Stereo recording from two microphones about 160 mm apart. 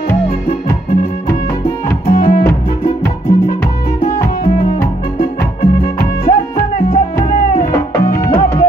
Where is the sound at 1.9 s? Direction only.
60° left (ahead or behind).